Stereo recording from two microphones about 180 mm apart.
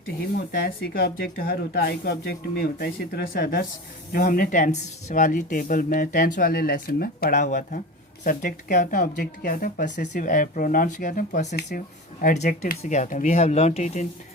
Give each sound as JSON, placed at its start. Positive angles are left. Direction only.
{"t": 0.3, "sound": "speech", "side_deg": 60}
{"t": 4.1, "sound": "speech", "side_deg": 55}
{"t": 12.2, "sound": "speech", "side_deg": 45}